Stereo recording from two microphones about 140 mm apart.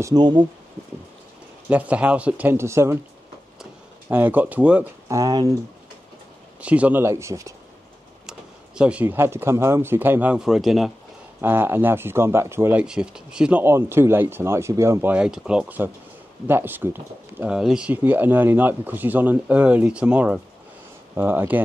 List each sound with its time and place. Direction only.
0.0 s speech: 30° right (ahead or behind)
1.7 s speech: 10° right (ahead or behind)
4.1 s speech: 15° right (ahead or behind)
5.0 s speech: 25° right (ahead or behind)
6.6 s speech: 10° right (ahead or behind)
8.3 s speech: 5° right (ahead or behind)
11.4 s speech: 15° right (ahead or behind)
12.8 s speech: 5° right (ahead or behind)